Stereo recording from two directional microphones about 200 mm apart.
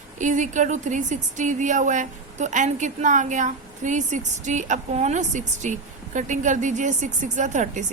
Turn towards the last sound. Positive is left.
turn(degrees=-40)  # may be behind; listen again after turning